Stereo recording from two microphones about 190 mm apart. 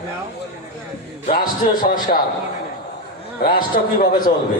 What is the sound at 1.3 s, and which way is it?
Speech, 45° left (ahead or behind).